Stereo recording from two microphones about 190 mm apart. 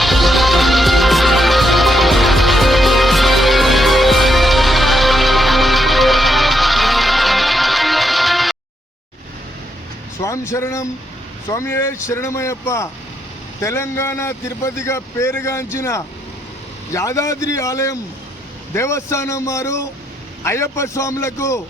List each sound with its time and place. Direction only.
0.0 s music: centre (ahead or behind)
10.2 s speech: 15° left (ahead or behind)